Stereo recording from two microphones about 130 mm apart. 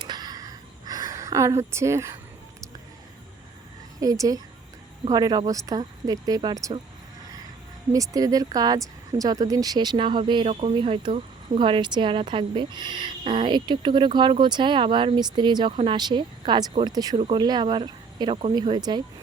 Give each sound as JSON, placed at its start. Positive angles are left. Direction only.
{"t": 0.0, "sound": "a sound", "side_deg": -35}
{"t": 4.0, "sound": "speech", "side_deg": -30}
{"t": 7.9, "sound": "speech", "side_deg": -25}
{"t": 17.2, "sound": "speech", "side_deg": -40}